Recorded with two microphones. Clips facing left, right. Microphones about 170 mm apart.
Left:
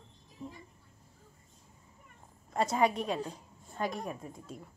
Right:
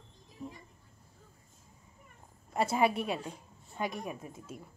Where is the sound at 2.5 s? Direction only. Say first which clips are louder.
Even; 10° right (ahead or behind).